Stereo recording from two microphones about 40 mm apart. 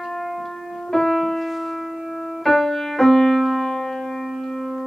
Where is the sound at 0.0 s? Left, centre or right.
Centre.